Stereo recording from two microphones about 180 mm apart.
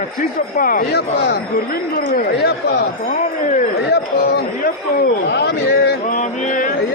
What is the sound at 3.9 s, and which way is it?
Speech, 60° left (ahead or behind).